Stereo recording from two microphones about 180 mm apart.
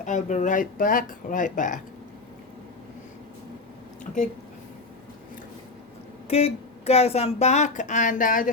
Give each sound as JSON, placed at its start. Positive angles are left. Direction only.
{"t": 0.0, "sound": "speech", "side_deg": 45}
{"t": 6.2, "sound": "speech", "side_deg": 35}